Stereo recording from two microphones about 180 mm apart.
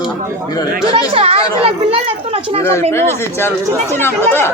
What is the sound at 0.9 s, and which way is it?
Speech, 30° right (ahead or behind).